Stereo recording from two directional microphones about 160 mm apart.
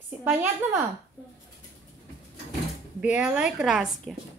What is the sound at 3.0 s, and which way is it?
A woman's voice, 5° right (ahead or behind).